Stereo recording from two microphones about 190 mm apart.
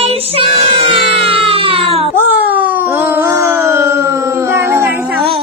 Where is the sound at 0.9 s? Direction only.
30° right (ahead or behind).